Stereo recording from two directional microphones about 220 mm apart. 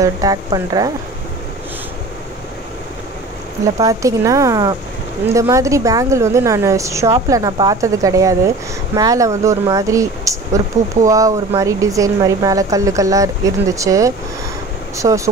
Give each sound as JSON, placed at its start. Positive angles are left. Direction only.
{"t": 0.0, "sound": "speech", "side_deg": -15}
{"t": 3.7, "sound": "speech", "side_deg": -15}